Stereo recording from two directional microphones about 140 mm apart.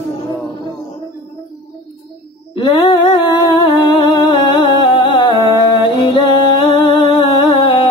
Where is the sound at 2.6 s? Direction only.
35° left (ahead or behind).